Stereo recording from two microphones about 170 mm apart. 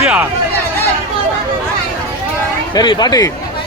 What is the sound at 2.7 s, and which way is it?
Speech, 25° left (ahead or behind).